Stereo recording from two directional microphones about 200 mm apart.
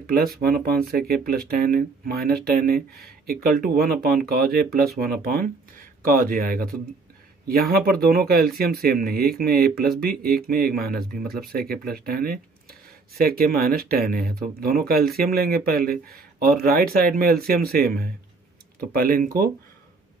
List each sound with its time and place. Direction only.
0.0 s speech: 50° right (ahead or behind)